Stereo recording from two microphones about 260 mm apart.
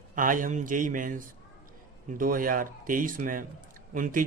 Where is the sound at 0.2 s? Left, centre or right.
Right.